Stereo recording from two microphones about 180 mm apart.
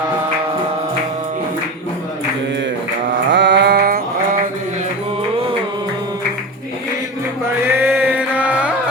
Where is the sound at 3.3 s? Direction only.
75° right (ahead or behind); by 4.0 s 60° right (ahead or behind).